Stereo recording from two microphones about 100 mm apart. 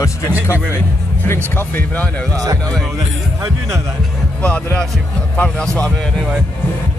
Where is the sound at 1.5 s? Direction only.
20° left (ahead or behind).